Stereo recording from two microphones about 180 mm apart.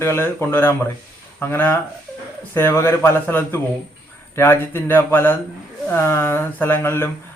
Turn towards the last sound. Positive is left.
turn(degrees=10)  # may be behind; listen again after turning